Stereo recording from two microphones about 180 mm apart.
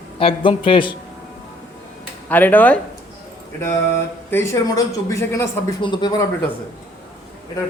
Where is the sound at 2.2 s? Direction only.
10° left (ahead or behind).